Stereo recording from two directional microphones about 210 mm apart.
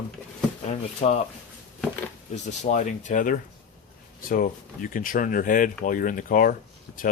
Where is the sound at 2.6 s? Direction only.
35° left (ahead or behind).